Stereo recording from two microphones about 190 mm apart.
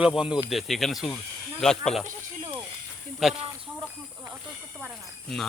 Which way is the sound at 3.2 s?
Centre (ahead or behind).